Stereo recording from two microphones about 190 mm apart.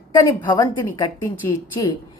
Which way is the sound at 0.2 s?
20° left (ahead or behind).